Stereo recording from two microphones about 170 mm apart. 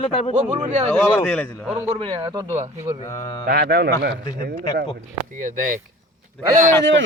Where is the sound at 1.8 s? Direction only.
35° right (ahead or behind).